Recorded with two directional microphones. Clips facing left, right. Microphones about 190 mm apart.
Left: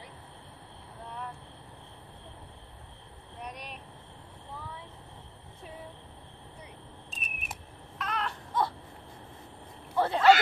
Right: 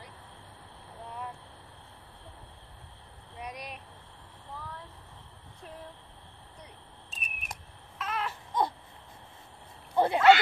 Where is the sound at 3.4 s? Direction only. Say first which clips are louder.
Right 1 dB; 10° right (ahead or behind).